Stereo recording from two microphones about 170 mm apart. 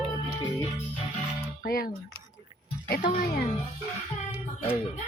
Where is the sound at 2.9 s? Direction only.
60° left (ahead or behind).